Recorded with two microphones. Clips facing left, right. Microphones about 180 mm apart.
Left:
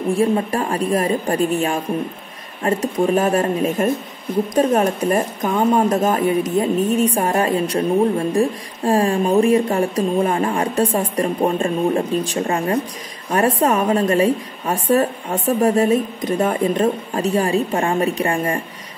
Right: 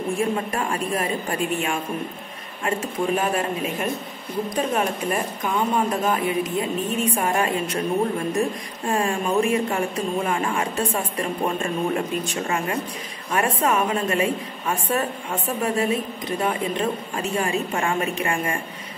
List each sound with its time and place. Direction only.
0.1 s speech: 35° left (ahead or behind)